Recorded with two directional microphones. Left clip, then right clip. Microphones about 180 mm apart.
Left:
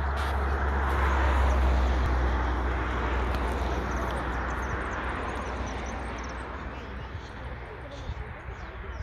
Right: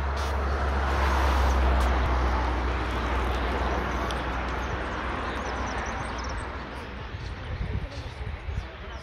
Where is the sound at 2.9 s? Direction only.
60° right (ahead or behind).